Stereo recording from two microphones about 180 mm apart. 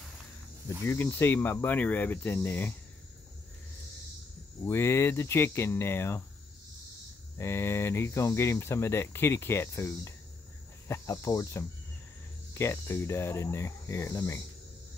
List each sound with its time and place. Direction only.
0.8 s speech: 15° left (ahead or behind)
4.6 s speech: 15° left (ahead or behind)
7.3 s speech: 15° left (ahead or behind)